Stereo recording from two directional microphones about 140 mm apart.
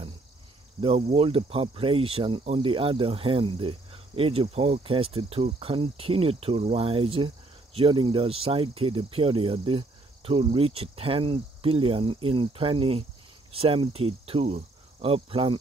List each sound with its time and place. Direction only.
0.7 s speech: 40° right (ahead or behind)